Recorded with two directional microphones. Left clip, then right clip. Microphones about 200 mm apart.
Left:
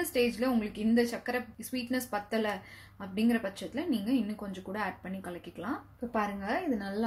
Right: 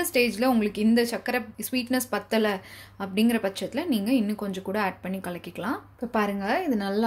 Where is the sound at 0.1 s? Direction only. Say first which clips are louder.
Right 7 dB; 35° right (ahead or behind).